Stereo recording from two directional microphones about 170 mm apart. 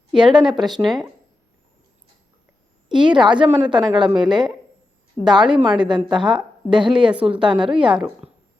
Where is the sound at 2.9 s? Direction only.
30° right (ahead or behind).